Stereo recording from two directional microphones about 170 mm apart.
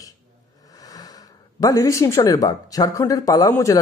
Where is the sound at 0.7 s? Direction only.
20° left (ahead or behind).